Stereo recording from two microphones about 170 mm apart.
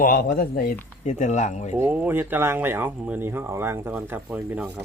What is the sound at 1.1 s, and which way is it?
Speech, 45° left (ahead or behind).